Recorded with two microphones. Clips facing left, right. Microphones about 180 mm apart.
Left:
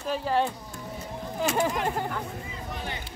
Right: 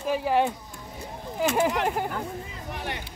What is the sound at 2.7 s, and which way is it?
Music, 65° right (ahead or behind).